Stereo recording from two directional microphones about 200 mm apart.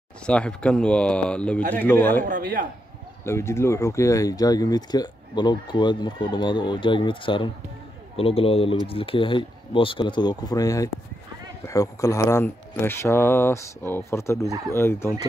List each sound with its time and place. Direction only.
0.3 s speech: 5° left (ahead or behind)
2.2 s speech: 40° right (ahead or behind)
3.3 s speech: 15° left (ahead or behind)